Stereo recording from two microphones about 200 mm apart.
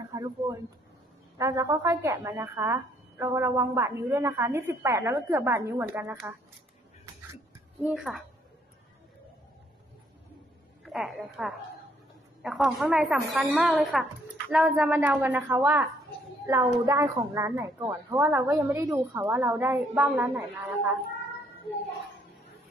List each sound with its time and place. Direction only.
0.1 s a woman's voice: 15° right (ahead or behind)
7.8 s a woman's voice: centre (ahead or behind)
10.8 s a woman's voice: centre (ahead or behind)